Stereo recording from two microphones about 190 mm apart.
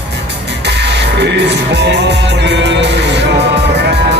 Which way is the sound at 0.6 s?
65° right (ahead or behind).